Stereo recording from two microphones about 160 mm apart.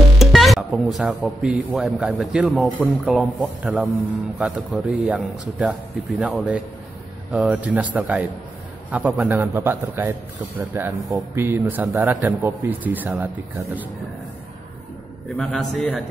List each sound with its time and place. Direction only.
0.2 s a man's voice: centre (ahead or behind)
15.2 s speech: centre (ahead or behind)